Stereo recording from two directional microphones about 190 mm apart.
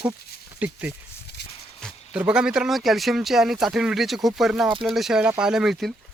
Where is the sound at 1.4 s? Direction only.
60° left (ahead or behind).